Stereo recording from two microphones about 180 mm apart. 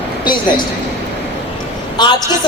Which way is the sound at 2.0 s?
25° left (ahead or behind).